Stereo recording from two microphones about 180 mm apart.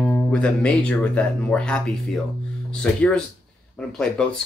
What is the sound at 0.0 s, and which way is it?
Speech, 5° left (ahead or behind).